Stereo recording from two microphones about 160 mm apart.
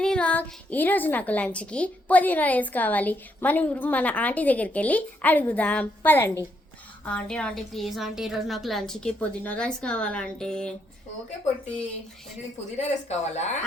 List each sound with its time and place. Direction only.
0.0 s a woman's voice: 5° left (ahead or behind)
12.7 s speech: 45° left (ahead or behind)